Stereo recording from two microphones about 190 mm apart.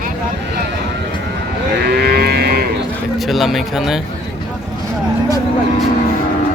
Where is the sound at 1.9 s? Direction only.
55° right (ahead or behind).